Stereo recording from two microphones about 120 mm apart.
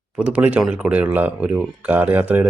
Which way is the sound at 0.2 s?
10° right (ahead or behind).